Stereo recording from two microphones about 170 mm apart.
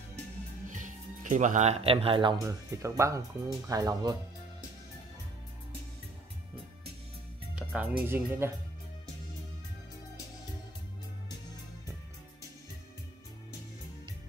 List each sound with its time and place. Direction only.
0.7 s speech: 50° right (ahead or behind); by 2.3 s 30° right (ahead or behind)
2.4 s speech: 20° right (ahead or behind)
7.5 s music: 5° right (ahead or behind)
8.1 s speech: 15° right (ahead or behind)